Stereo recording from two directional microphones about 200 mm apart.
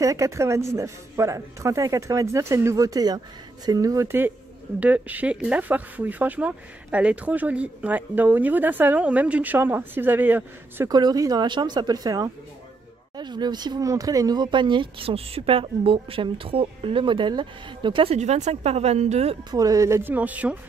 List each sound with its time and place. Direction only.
0.0 s speech: 15° right (ahead or behind)
10.9 s speech: 20° right (ahead or behind)
19.5 s speech: 15° right (ahead or behind)